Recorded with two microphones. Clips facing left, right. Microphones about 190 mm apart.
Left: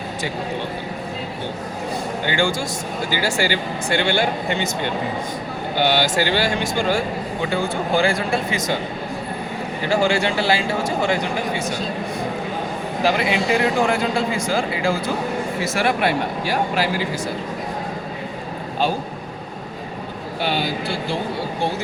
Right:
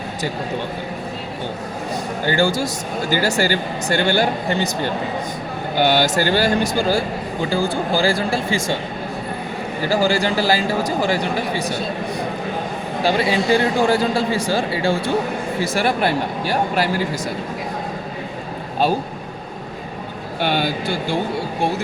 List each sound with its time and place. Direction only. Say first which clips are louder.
2.2 s speech: right 4 dB; 40° right (ahead or behind)
9.9 s speech: right 1 dB; 35° right (ahead or behind)
13.0 s speech: right 1 dB; 30° right (ahead or behind)